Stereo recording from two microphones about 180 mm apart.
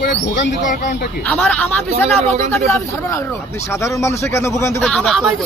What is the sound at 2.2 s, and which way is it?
Speech, 35° right (ahead or behind).